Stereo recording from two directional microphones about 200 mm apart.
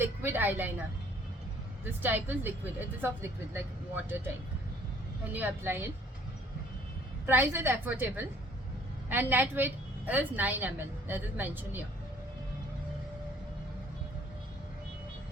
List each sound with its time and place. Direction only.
0.0 s a woman's voice: 10° right (ahead or behind)
1.8 s a woman's voice: 10° right (ahead or behind)
5.3 s a woman's voice: 10° right (ahead or behind)
7.3 s a woman's voice: 10° right (ahead or behind)